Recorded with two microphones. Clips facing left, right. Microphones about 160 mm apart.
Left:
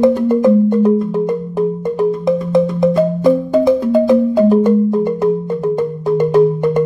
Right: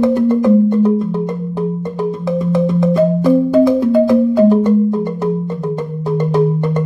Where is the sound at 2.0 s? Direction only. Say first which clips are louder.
Left 3 dB; 15° left (ahead or behind).